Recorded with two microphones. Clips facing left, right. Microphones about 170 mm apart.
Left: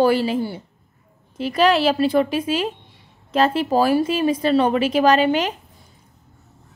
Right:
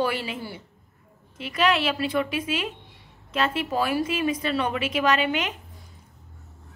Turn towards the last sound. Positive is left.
turn(degrees=35)  # may be behind; listen again after turning